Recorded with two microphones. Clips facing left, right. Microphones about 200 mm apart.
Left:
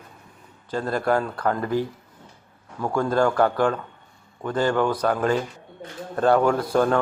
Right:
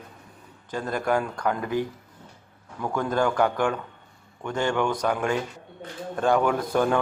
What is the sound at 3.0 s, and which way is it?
Speech, 15° right (ahead or behind).